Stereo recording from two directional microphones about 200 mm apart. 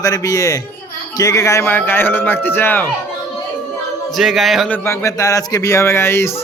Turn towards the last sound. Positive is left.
turn(degrees=10)  # may be behind; listen again after turning